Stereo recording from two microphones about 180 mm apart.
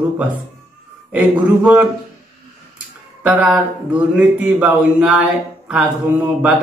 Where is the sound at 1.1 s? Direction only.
5° right (ahead or behind).